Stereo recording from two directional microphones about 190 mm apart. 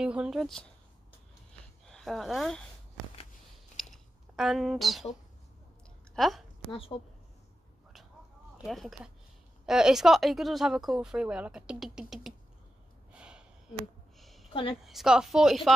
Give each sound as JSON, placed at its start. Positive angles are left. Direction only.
{"t": 0.0, "sound": "speech", "side_deg": -5}
{"t": 1.9, "sound": "speech", "side_deg": 0}
{"t": 3.7, "sound": "a sound", "side_deg": 0}
{"t": 6.1, "sound": "a woman's voice", "side_deg": 0}
{"t": 6.7, "sound": "speech", "side_deg": 30}
{"t": 8.6, "sound": "speech", "side_deg": 0}
{"t": 13.1, "sound": "a sound", "side_deg": -5}
{"t": 14.5, "sound": "a woman's voice", "side_deg": 25}
{"t": 14.9, "sound": "speech", "side_deg": 0}